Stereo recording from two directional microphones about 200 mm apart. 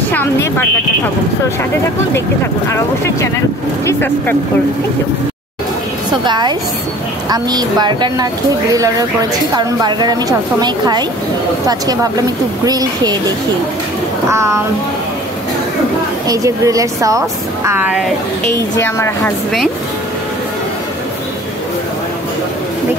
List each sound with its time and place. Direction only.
3.8 s a woman's voice: 10° left (ahead or behind)
6.2 s a woman's voice: 20° right (ahead or behind)
16.3 s a woman's voice: 15° right (ahead or behind)
18.8 s a woman's voice: 15° left (ahead or behind)